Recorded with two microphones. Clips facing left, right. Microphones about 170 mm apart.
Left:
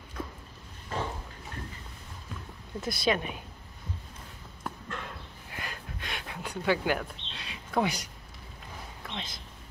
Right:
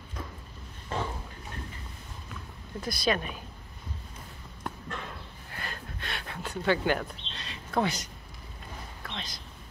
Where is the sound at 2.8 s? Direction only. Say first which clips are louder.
Even; 25° left (ahead or behind).